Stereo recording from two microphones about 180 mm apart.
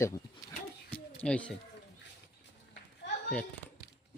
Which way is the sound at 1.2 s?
5° left (ahead or behind).